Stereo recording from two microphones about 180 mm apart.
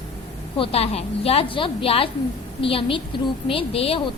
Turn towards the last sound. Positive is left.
turn(degrees=30)  # may be behind; listen again after turning